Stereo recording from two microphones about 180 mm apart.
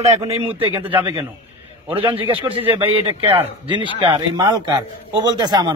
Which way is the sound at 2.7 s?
30° right (ahead or behind).